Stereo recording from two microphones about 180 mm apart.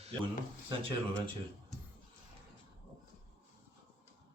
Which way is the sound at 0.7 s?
30° right (ahead or behind).